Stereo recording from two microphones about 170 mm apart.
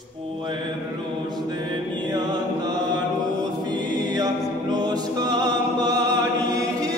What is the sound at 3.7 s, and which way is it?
A capella, 25° right (ahead or behind).